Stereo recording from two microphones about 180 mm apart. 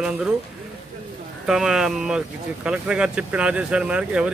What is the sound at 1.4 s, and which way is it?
Speech, 5° right (ahead or behind).